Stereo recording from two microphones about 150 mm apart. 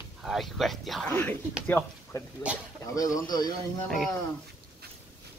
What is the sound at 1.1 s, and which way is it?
A woman's voice, 15° left (ahead or behind).